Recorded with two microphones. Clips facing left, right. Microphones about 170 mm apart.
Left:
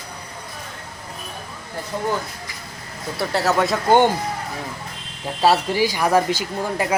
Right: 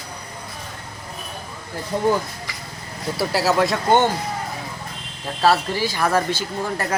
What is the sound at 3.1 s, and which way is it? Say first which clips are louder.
Speech: even; 5° right (ahead or behind).